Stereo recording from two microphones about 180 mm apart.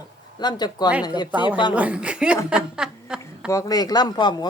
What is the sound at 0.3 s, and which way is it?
A man's voice, 25° left (ahead or behind).